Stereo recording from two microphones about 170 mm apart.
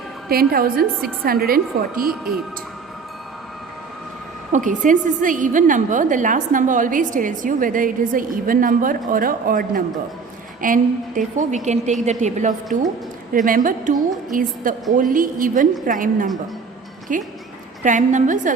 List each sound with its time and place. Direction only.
0.3 s a woman's voice: 60° right (ahead or behind)
4.5 s a woman's voice: 50° right (ahead or behind)